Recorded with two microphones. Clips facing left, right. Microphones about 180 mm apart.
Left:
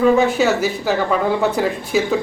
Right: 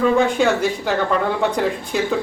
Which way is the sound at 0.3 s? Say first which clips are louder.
Left 1 dB; 5° left (ahead or behind).